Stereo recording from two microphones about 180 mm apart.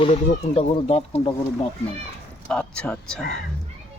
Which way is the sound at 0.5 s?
35° left (ahead or behind).